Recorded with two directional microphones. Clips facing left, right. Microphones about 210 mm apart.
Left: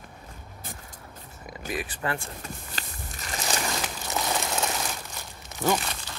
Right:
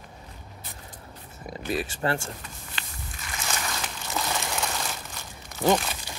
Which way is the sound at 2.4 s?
40° left (ahead or behind).